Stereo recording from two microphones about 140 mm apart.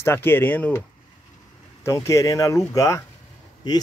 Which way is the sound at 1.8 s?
20° left (ahead or behind).